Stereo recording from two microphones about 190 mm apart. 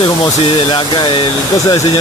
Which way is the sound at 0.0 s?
25° left (ahead or behind).